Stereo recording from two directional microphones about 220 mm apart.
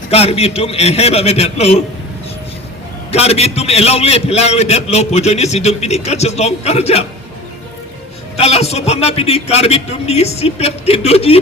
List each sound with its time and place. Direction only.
0.1 s a man's voice: 30° left (ahead or behind)
3.1 s a man's voice: 30° left (ahead or behind)
8.4 s a man's voice: 30° left (ahead or behind)